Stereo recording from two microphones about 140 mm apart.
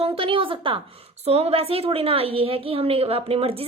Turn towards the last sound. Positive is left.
turn(degrees=-45)  # may be behind; listen again after turning